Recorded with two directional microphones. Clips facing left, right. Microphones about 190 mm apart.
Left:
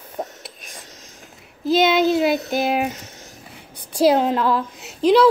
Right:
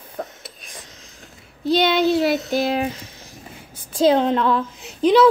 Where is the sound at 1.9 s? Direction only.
45° left (ahead or behind).